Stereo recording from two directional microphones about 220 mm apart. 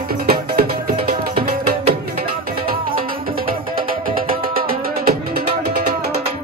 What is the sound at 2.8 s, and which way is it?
Music, 40° right (ahead or behind).